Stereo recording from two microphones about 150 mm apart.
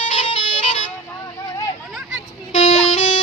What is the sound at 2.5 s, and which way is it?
Music, 50° left (ahead or behind).